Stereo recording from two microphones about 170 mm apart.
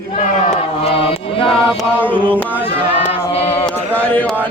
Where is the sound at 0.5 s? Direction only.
35° left (ahead or behind).